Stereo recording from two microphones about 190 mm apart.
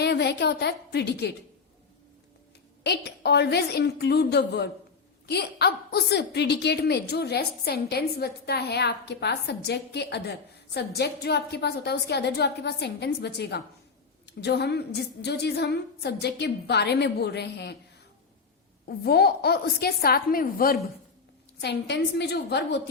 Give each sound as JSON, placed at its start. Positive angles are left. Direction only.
{"t": 0.0, "sound": "a woman's voice", "side_deg": 60}
{"t": 2.8, "sound": "a woman's voice", "side_deg": 60}
{"t": 18.9, "sound": "a woman's voice", "side_deg": 55}
{"t": 21.6, "sound": "a woman's voice", "side_deg": 60}